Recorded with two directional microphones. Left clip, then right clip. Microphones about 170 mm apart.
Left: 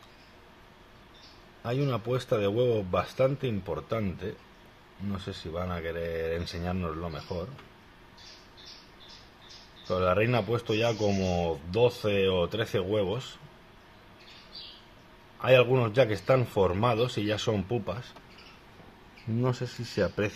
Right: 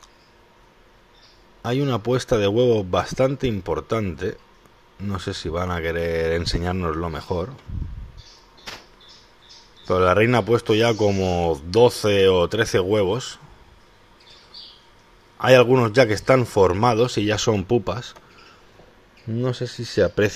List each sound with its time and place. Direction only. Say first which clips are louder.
1.6 s speech: right 8 dB; 35° right (ahead or behind)
9.8 s speech: right 9 dB; 45° right (ahead or behind)
15.4 s speech: right 8 dB; 35° right (ahead or behind)
19.4 s speech: right 6 dB; 30° right (ahead or behind)